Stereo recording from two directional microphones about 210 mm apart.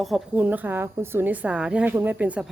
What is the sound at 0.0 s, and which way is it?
A woman's voice, 5° right (ahead or behind).